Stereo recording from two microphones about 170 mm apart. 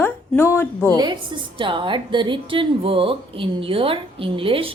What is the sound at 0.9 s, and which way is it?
A woman's voice, 25° right (ahead or behind).